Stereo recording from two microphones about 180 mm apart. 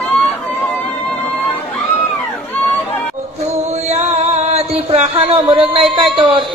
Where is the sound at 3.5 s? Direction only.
35° right (ahead or behind).